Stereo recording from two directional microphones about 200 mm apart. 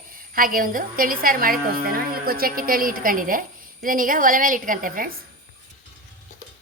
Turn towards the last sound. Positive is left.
turn(degrees=-45)  # may be behind; listen again after turning